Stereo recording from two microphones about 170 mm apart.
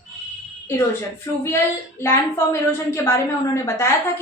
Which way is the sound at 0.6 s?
15° left (ahead or behind).